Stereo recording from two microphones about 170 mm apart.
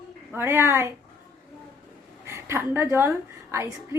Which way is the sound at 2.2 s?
15° right (ahead or behind).